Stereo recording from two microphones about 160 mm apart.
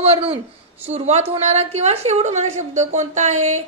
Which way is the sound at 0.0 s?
40° right (ahead or behind).